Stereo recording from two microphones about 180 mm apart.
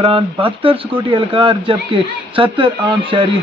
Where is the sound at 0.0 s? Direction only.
30° right (ahead or behind).